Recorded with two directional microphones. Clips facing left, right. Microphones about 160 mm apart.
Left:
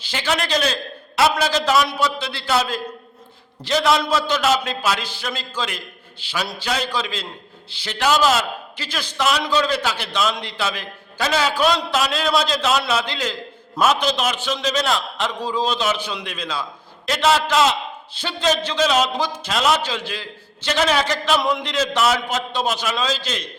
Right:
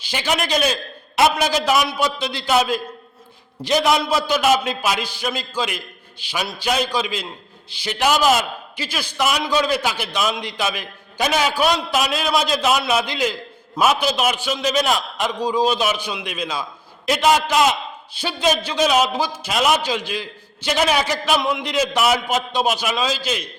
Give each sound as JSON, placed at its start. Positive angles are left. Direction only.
{"t": 0.0, "sound": "a man's voice", "side_deg": -15}